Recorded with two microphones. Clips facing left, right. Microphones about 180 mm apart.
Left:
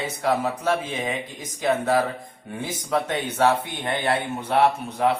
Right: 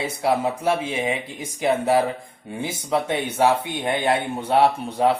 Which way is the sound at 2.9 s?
10° right (ahead or behind).